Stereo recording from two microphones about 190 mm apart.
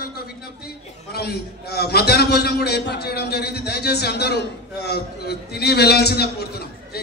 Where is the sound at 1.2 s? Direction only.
55° left (ahead or behind).